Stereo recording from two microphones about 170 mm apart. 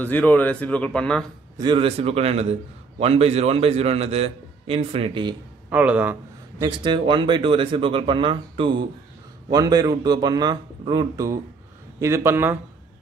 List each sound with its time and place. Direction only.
0.0 s speech: 10° left (ahead or behind)
1.6 s a man's voice: 30° right (ahead or behind)
5.7 s speech: 10° right (ahead or behind)
6.6 s speech: 25° right (ahead or behind)